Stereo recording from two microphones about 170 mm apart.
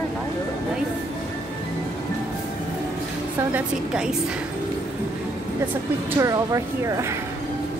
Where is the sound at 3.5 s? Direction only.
5° right (ahead or behind).